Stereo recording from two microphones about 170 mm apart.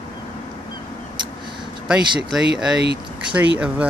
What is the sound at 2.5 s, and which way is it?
Speech, 5° right (ahead or behind).